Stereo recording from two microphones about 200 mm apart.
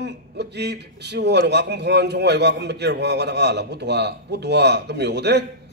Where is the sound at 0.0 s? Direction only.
60° right (ahead or behind).